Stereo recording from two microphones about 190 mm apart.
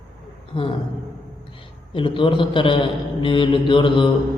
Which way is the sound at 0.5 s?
25° left (ahead or behind).